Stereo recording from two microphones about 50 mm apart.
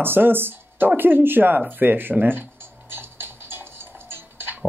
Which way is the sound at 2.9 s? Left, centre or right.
Right.